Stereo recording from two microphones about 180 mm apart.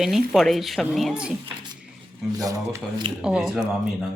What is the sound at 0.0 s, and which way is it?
Speech, centre (ahead or behind).